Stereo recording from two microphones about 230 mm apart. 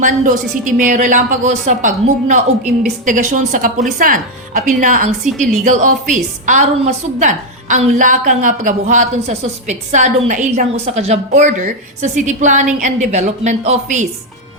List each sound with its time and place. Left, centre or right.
0.6 s a woman's voice: right